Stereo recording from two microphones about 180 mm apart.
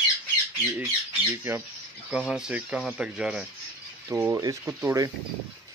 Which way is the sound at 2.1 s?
5° right (ahead or behind).